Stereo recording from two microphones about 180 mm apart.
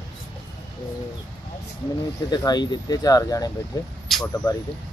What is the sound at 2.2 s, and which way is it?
Speech, 25° left (ahead or behind).